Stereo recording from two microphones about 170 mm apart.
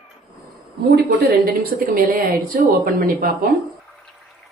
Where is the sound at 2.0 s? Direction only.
55° right (ahead or behind).